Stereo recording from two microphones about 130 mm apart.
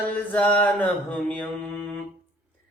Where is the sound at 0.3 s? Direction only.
10° left (ahead or behind).